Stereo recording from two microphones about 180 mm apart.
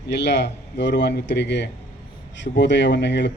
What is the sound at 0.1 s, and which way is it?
A man's voice, 70° left (ahead or behind).